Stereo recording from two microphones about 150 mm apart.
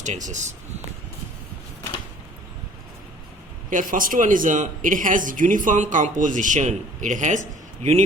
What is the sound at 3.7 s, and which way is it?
A man's voice, 65° right (ahead or behind).